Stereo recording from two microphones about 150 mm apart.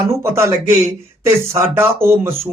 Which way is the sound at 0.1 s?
20° right (ahead or behind).